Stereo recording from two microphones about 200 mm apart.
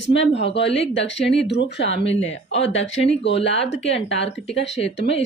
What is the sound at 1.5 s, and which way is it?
Speech, 60° left (ahead or behind).